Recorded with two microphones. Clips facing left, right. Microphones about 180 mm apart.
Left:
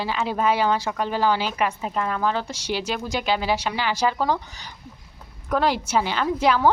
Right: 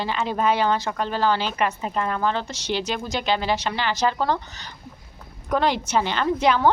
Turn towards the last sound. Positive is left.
turn(degrees=5)  # may be behind; listen again after turning